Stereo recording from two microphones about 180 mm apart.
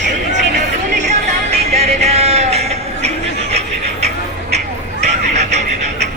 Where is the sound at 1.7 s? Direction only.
35° right (ahead or behind).